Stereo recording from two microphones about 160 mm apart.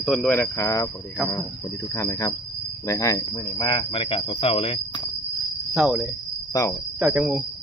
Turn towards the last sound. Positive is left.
turn(degrees=-5)  # may be behind; listen again after turning